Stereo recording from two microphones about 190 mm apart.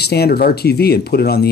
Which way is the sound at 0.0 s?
55° left (ahead or behind).